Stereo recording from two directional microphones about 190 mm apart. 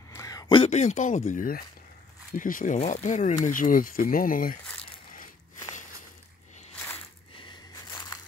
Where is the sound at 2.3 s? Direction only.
45° left (ahead or behind).